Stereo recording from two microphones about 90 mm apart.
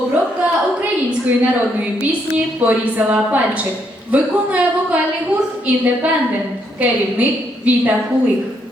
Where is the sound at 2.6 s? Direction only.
15° right (ahead or behind).